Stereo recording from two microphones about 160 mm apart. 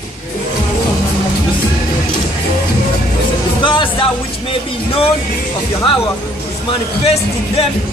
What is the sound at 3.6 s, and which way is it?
Music, 30° left (ahead or behind).